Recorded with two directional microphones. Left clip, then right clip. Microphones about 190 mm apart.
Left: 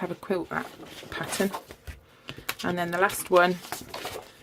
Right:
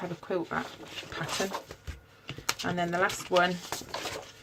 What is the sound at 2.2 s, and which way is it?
Speech, 45° left (ahead or behind).